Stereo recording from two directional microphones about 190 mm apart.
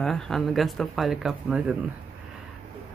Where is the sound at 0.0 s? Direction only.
Centre (ahead or behind).